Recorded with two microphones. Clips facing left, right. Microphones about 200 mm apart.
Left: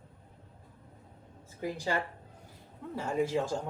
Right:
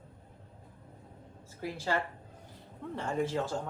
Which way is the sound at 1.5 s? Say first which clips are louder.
Left 1 dB; 15° left (ahead or behind).